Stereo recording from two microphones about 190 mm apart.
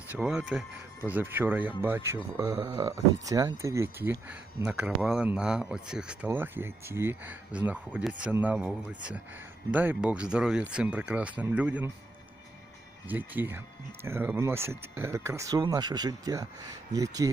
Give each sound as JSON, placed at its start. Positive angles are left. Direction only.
{"t": 0.1, "sound": "speech", "side_deg": -5}
{"t": 13.1, "sound": "speech", "side_deg": -10}